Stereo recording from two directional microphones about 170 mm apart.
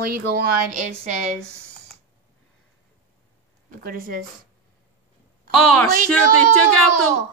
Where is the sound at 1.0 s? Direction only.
45° right (ahead or behind).